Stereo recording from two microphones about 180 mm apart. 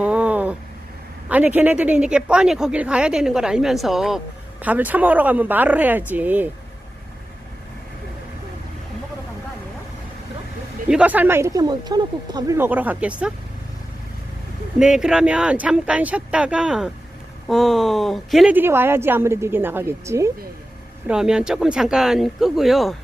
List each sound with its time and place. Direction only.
0.0 s a sound: 5° right (ahead or behind)
1.3 s speech: 10° right (ahead or behind)
10.8 s speech: 5° right (ahead or behind)
14.8 s speech: 5° right (ahead or behind)
18.5 s speech: 10° right (ahead or behind)
21.1 s speech: 5° right (ahead or behind)